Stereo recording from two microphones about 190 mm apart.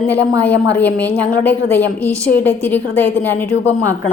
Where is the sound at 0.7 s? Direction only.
10° left (ahead or behind).